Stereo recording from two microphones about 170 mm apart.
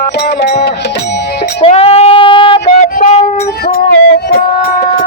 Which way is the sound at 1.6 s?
35° left (ahead or behind).